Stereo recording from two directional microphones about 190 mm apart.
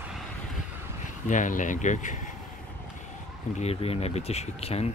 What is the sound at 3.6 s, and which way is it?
Speech, 30° left (ahead or behind).